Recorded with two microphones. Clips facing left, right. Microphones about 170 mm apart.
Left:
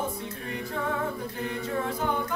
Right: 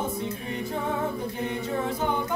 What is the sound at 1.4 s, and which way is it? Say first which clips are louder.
A capella: right 1 dB; 20° right (ahead or behind).